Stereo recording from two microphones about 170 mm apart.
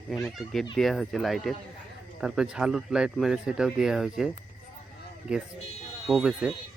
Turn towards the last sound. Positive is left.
turn(degrees=-5)  # may be behind; listen again after turning